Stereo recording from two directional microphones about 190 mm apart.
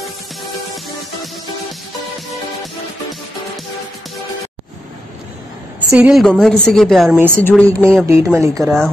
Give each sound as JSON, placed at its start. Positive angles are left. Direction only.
{"t": 5.9, "sound": "a woman's voice", "side_deg": -5}
{"t": 7.2, "sound": "speech", "side_deg": -10}
{"t": 8.6, "sound": "a woman's voice", "side_deg": 0}